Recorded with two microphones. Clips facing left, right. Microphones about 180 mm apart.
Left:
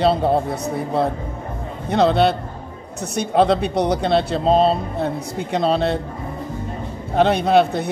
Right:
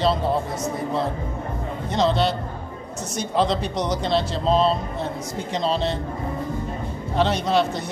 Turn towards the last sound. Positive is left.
turn(degrees=60)  # may be behind; listen again after turning